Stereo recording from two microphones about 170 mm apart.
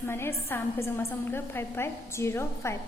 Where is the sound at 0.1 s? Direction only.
15° left (ahead or behind).